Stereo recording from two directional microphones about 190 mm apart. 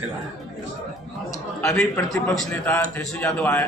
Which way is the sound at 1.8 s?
Centre (ahead or behind).